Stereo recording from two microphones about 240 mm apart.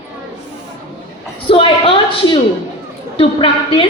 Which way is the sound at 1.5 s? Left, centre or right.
Left.